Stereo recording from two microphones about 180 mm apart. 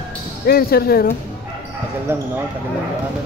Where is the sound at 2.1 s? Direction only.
10° right (ahead or behind).